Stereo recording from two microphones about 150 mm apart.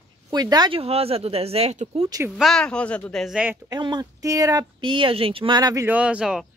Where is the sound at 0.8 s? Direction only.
40° right (ahead or behind).